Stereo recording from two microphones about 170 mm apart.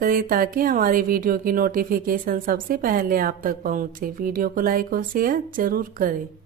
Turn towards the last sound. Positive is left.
turn(degrees=-55)  # may be behind; listen again after turning